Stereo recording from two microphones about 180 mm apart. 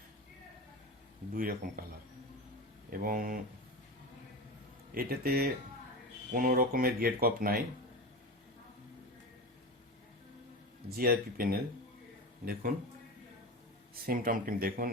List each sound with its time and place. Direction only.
1.3 s speech: 55° right (ahead or behind)
3.0 s speech: 50° right (ahead or behind)
4.9 s speech: 55° right (ahead or behind)
10.8 s speech: 55° right (ahead or behind)
14.0 s speech: 50° right (ahead or behind)